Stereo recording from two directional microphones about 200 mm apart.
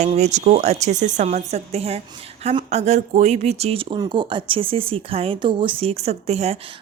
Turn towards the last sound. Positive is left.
turn(degrees=-30)  # may be behind; listen again after turning